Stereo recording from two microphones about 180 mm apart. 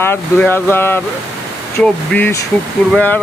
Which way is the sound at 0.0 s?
10° left (ahead or behind).